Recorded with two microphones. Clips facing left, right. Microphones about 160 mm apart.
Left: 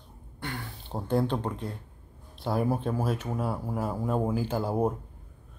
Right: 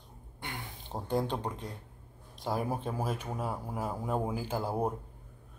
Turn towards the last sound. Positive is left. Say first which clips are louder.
# left 5 dB
turn(degrees=-10)  # may be behind; listen again after turning